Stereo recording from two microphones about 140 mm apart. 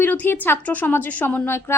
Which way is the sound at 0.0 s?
15° left (ahead or behind).